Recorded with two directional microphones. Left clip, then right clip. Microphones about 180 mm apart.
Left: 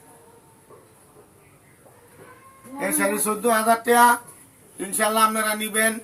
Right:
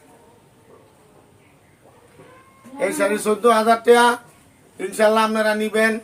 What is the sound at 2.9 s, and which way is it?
A man's voice, 40° right (ahead or behind).